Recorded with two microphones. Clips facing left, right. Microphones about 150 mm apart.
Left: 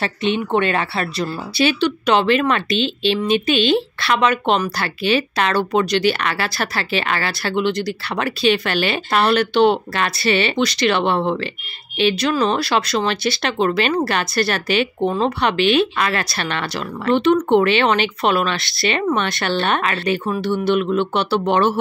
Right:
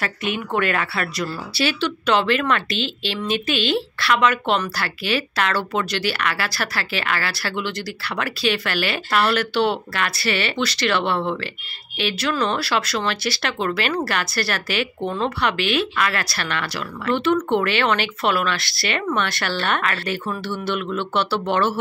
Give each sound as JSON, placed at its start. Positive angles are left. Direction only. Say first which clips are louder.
{"t": 0.0, "sound": "speech", "louder": "left 5 dB", "side_deg": 25}